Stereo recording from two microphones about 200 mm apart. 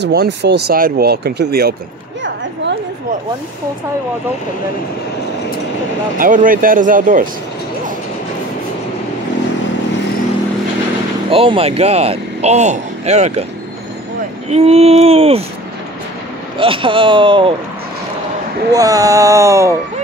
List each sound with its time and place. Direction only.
0.0 s speech: 55° right (ahead or behind)
6.1 s speech: 40° right (ahead or behind)
11.2 s speech: 25° right (ahead or behind)
14.5 s speech: 30° right (ahead or behind)
16.5 s speech: 25° right (ahead or behind)
18.7 s a sound: 15° right (ahead or behind)